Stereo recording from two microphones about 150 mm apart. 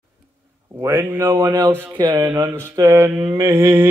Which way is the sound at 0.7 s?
15° right (ahead or behind).